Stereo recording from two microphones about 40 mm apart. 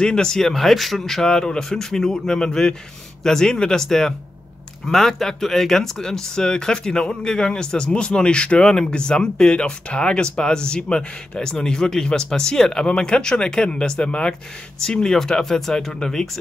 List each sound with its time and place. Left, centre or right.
0.0 s speech: centre